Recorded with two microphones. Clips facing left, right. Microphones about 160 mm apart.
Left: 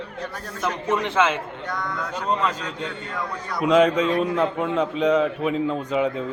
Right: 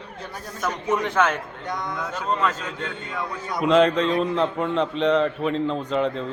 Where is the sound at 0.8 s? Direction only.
10° right (ahead or behind).